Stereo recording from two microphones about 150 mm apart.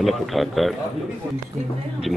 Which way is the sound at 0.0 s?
Centre (ahead or behind).